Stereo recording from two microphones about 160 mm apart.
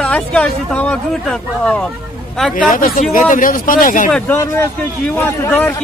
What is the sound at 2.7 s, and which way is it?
Speech, 55° left (ahead or behind).